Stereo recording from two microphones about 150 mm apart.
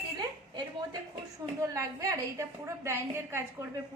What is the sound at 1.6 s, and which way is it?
A woman's voice, 20° right (ahead or behind).